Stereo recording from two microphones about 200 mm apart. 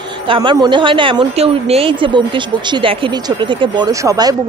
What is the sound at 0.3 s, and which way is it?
A woman's voice, 25° right (ahead or behind).